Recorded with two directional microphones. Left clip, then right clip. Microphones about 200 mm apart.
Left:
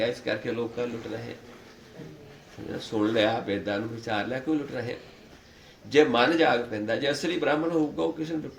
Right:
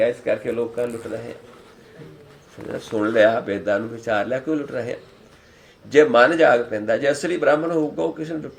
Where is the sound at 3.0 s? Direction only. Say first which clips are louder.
Right 8 dB; 25° left (ahead or behind).